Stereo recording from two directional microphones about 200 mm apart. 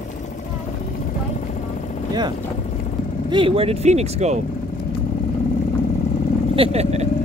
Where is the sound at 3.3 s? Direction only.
25° right (ahead or behind).